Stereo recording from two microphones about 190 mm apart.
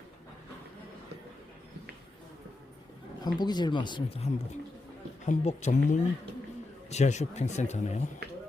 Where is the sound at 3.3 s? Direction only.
20° left (ahead or behind).